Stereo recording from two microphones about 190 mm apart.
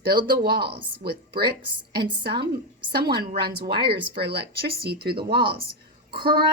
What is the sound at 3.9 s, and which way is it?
A woman's voice, 55° right (ahead or behind).